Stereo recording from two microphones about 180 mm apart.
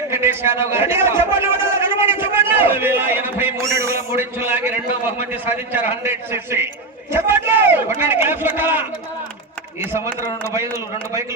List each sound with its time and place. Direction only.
0.1 s a man's voice: 15° right (ahead or behind)